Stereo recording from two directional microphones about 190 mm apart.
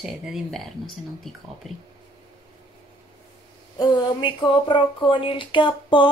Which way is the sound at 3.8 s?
25° left (ahead or behind).